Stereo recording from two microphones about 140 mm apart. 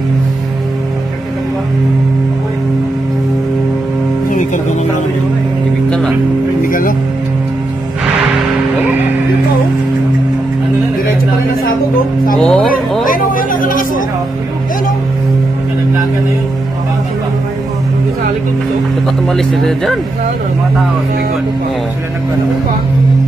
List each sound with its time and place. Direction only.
5.9 s music: 5° left (ahead or behind)
6.6 s music: 85° left
12.4 s music: 5° left (ahead or behind)
13.0 s chatter: 75° left (ahead or behind)
19.2 s speech: centre (ahead or behind)